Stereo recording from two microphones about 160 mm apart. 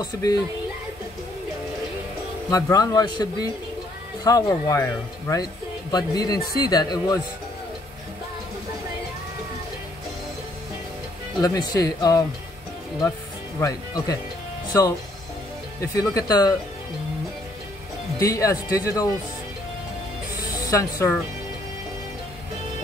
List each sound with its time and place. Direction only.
0.0 s speech: 25° left (ahead or behind)
2.5 s speech: 20° left (ahead or behind)
11.4 s speech: 25° left (ahead or behind)
13.6 s speech: 20° left (ahead or behind)
18.2 s speech: 20° left (ahead or behind)